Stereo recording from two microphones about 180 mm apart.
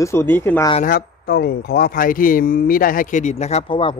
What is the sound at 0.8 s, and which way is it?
Speech, 55° left (ahead or behind).